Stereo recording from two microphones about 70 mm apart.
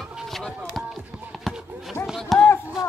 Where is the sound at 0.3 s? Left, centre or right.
Centre.